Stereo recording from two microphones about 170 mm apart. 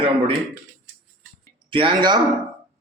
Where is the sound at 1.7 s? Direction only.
30° right (ahead or behind).